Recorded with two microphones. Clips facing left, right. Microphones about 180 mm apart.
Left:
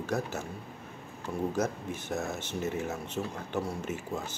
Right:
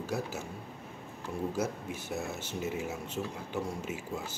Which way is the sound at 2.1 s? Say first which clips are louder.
Left 3 dB; 45° left (ahead or behind).